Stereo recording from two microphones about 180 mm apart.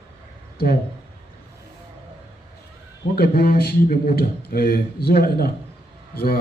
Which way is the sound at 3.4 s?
60° left (ahead or behind).